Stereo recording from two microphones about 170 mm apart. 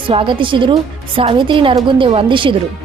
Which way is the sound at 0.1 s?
30° right (ahead or behind).